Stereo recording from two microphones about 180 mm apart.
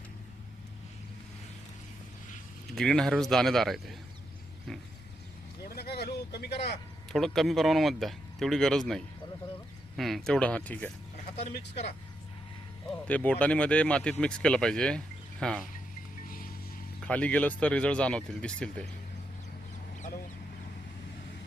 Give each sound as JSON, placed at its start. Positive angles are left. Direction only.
{"t": 2.7, "sound": "speech", "side_deg": 5}
{"t": 5.6, "sound": "vehicle", "side_deg": 60}
{"t": 7.1, "sound": "speech", "side_deg": 0}
{"t": 11.3, "sound": "speech", "side_deg": 35}
{"t": 13.1, "sound": "speech", "side_deg": 5}
{"t": 16.2, "sound": "music", "side_deg": 50}
{"t": 17.0, "sound": "speech", "side_deg": 5}